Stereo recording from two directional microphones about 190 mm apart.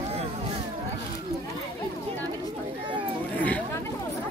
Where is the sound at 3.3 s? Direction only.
10° left (ahead or behind).